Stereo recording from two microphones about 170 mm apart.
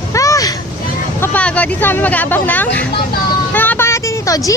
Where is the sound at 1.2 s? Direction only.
10° left (ahead or behind).